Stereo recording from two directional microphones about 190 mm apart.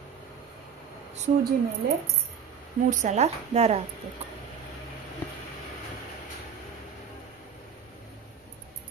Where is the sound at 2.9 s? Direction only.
40° right (ahead or behind).